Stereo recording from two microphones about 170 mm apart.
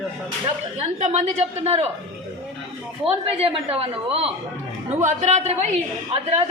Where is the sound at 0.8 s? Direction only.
45° right (ahead or behind).